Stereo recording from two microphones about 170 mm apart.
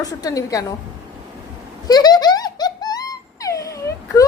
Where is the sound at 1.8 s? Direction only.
25° left (ahead or behind).